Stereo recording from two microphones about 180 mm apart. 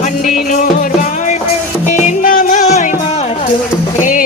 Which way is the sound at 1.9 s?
45° left (ahead or behind).